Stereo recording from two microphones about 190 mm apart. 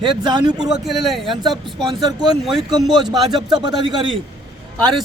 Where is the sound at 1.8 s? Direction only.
20° right (ahead or behind).